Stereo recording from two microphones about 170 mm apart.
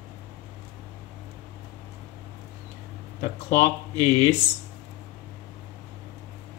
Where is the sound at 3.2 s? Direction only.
50° left (ahead or behind).